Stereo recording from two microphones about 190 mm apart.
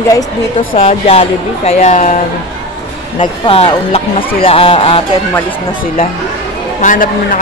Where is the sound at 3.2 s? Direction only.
30° left (ahead or behind).